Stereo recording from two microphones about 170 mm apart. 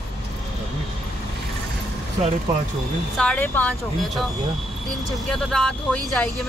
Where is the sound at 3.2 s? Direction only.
10° left (ahead or behind).